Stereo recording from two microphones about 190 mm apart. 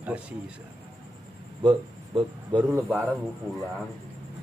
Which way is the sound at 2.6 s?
10° right (ahead or behind).